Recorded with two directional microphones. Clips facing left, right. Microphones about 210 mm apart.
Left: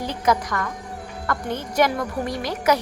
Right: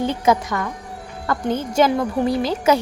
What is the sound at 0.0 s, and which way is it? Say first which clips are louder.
Speech: right 4 dB; 25° right (ahead or behind).